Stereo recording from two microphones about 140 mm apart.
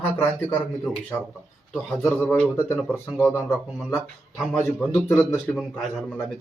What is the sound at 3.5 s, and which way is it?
Speech, centre (ahead or behind).